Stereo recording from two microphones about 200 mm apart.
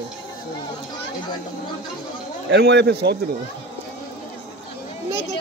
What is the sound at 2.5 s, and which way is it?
Speech, 60° right (ahead or behind).